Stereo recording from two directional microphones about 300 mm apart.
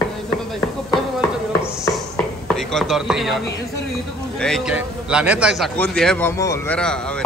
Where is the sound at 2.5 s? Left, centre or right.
Centre.